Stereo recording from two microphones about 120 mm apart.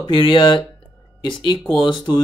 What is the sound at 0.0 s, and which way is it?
Speech, 45° left (ahead or behind).